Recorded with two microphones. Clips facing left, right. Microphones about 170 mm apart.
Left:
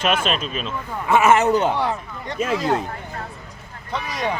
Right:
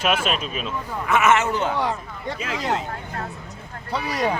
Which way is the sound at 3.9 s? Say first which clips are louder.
Right 2 dB; 10° right (ahead or behind).